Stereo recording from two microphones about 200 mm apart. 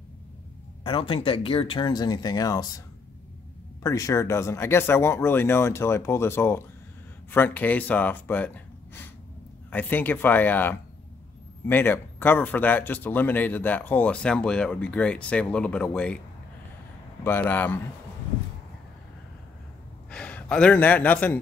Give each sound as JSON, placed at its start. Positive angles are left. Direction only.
{"t": 0.8, "sound": "speech", "side_deg": 25}
{"t": 3.8, "sound": "speech", "side_deg": 15}
{"t": 17.2, "sound": "speech", "side_deg": 10}
{"t": 20.1, "sound": "speech", "side_deg": 5}